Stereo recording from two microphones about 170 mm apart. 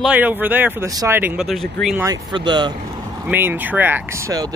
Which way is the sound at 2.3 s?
25° right (ahead or behind).